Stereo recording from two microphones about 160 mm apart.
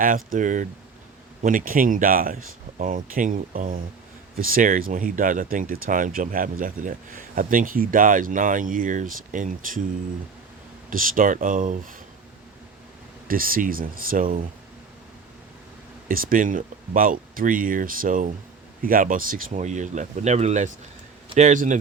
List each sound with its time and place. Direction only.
0.0 s speech: 55° right (ahead or behind)
10.8 s speech: 60° right (ahead or behind)
13.2 s speech: 65° right (ahead or behind)
16.0 s speech: 60° right (ahead or behind)